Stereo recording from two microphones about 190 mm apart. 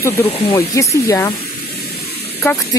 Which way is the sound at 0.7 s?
15° left (ahead or behind).